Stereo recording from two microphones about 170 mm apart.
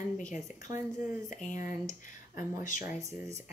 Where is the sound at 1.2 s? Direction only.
45° left (ahead or behind).